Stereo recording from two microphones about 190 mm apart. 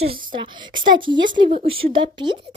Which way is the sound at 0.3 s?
25° right (ahead or behind).